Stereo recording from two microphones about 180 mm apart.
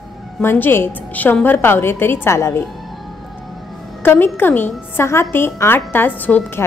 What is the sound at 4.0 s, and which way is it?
A woman's voice, 10° left (ahead or behind).